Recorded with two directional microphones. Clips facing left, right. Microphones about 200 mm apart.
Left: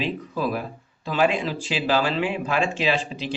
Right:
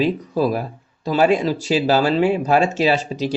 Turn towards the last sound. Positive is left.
turn(degrees=-40)  # may be behind; listen again after turning